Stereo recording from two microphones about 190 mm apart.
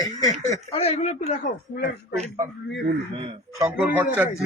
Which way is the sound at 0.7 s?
30° left (ahead or behind).